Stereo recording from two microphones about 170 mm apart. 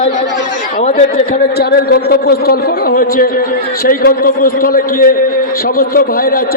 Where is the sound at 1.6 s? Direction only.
65° left (ahead or behind).